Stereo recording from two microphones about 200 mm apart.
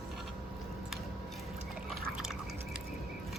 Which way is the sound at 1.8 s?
Centre (ahead or behind).